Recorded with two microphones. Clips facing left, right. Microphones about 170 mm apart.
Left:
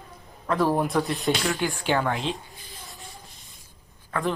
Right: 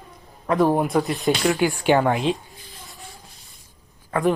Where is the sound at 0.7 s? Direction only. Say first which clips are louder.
Right 3 dB; centre (ahead or behind).